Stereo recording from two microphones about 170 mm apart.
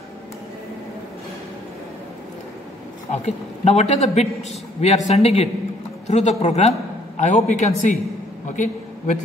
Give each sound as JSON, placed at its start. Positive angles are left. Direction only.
{"t": 3.1, "sound": "a man's voice", "side_deg": 40}